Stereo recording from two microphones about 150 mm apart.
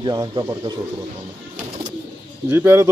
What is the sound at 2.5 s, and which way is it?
Speech, 15° right (ahead or behind).